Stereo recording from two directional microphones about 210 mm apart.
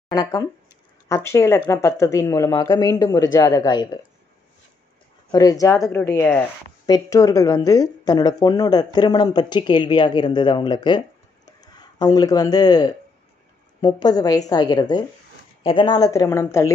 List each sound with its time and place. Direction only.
0.1 s speech: 20° left (ahead or behind)
5.3 s speech: 15° left (ahead or behind)